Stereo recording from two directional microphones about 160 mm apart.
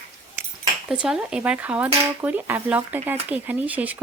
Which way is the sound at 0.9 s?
5° right (ahead or behind).